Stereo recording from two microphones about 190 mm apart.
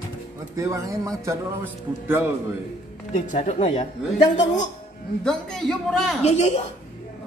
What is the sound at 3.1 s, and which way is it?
Speech, 40° left (ahead or behind).